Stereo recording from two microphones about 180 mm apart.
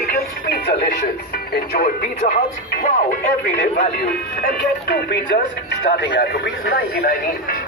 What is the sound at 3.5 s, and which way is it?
Speech, 50° left (ahead or behind).